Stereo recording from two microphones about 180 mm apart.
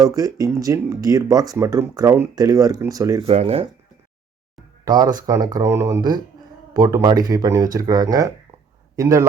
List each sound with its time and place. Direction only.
0.0 s speech: 20° right (ahead or behind)
3.2 s speech: 35° right (ahead or behind)
4.9 s a man's voice: 20° right (ahead or behind)